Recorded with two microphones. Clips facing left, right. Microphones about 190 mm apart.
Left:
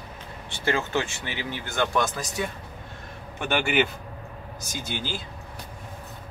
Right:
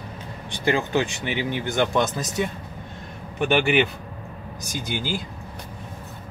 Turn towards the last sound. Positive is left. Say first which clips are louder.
# right 4 dB
turn(degrees=-15)  # may be behind; listen again after turning